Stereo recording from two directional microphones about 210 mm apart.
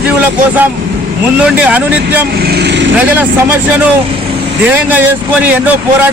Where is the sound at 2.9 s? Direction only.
10° right (ahead or behind).